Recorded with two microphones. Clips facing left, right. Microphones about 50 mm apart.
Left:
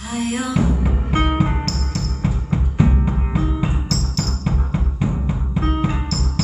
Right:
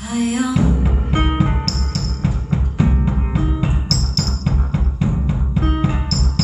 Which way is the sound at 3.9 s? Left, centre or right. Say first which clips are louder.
Right 1 dB; centre.